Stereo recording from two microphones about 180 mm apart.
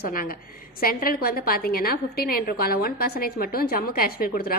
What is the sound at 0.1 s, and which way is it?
A woman's voice, 55° left (ahead or behind).